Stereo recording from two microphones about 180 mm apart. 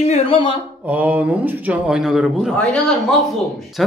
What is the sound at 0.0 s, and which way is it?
Speech, 35° left (ahead or behind).